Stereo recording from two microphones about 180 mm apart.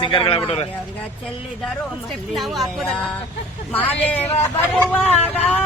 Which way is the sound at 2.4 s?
Centre (ahead or behind).